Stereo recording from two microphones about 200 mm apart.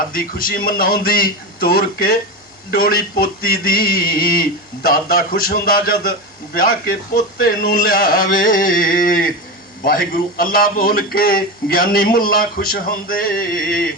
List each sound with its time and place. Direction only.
0.1 s speech: 45° left (ahead or behind)